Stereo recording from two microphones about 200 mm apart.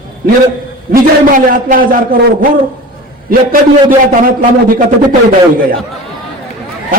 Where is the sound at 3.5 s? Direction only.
45° right (ahead or behind).